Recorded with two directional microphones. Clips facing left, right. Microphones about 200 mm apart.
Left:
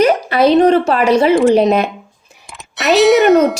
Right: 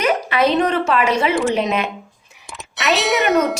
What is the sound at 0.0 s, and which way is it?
Speech, 35° left (ahead or behind).